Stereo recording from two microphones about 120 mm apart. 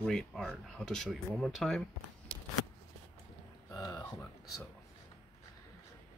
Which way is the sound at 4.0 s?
20° left (ahead or behind).